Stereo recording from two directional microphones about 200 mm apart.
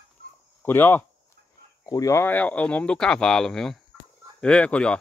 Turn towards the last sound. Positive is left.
turn(degrees=5)  # may be behind; listen again after turning